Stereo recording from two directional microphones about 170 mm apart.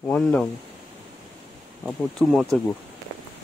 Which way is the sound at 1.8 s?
5° left (ahead or behind).